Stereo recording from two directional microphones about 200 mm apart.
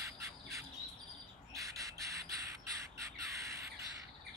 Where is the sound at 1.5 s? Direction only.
15° right (ahead or behind).